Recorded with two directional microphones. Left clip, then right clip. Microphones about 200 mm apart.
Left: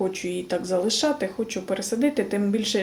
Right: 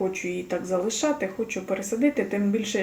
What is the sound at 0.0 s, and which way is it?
Speech, 10° left (ahead or behind).